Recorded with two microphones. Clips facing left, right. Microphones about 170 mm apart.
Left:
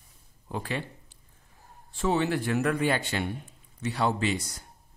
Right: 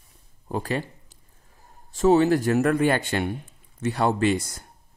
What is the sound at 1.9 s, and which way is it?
A man's voice, 40° right (ahead or behind).